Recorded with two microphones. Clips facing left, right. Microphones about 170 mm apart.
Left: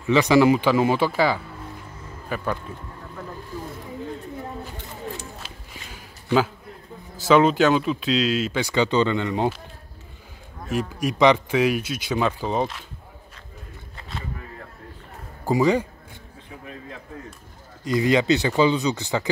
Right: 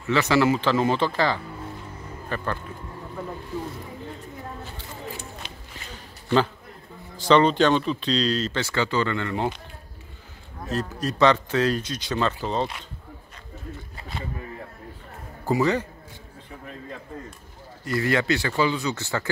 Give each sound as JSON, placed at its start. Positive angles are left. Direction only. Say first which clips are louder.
{"t": 0.0, "sound": "speech", "louder": "left 4 dB", "side_deg": 15}
{"t": 5.4, "sound": "a sound", "louder": "even", "side_deg": 10}
{"t": 7.2, "sound": "speech", "louder": "left 1 dB", "side_deg": 5}
{"t": 10.7, "sound": "speech", "louder": "left 2 dB", "side_deg": 10}
{"t": 15.4, "sound": "speech", "louder": "left 3 dB", "side_deg": 15}
{"t": 17.8, "sound": "speech", "louder": "left 4 dB", "side_deg": 15}